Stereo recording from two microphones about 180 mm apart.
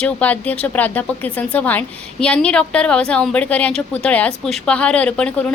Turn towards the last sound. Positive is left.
turn(degrees=5)  # may be behind; listen again after turning